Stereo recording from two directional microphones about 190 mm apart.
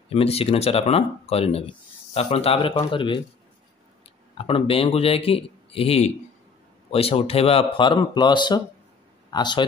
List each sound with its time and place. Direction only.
0.1 s speech: 30° left (ahead or behind)
4.4 s speech: 30° left (ahead or behind)